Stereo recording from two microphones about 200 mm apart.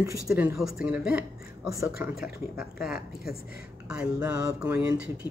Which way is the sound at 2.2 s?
5° right (ahead or behind).